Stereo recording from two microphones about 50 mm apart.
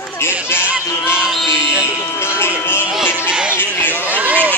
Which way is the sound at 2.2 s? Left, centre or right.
Left.